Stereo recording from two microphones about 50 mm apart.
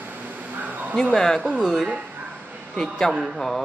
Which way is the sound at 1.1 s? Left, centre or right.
Centre.